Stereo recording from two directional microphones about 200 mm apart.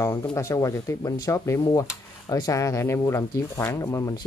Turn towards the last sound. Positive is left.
turn(degrees=15)  # may be behind; listen again after turning